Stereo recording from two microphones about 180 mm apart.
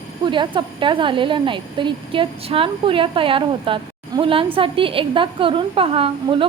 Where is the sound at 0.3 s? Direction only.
25° right (ahead or behind).